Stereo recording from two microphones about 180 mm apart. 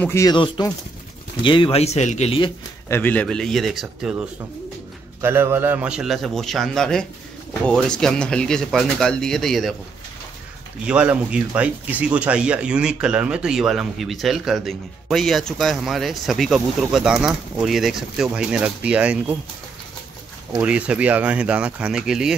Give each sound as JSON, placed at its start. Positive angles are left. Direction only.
{"t": 0.0, "sound": "speech", "side_deg": 15}
{"t": 2.9, "sound": "speech", "side_deg": 10}
{"t": 10.9, "sound": "speech", "side_deg": -5}
{"t": 20.6, "sound": "speech", "side_deg": -5}